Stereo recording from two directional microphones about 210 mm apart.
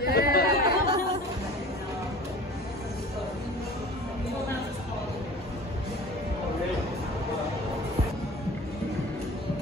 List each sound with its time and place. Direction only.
0.0 s chatter: 45° left (ahead or behind)